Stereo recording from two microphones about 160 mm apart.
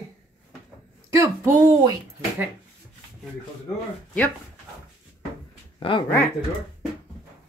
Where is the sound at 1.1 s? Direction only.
15° right (ahead or behind).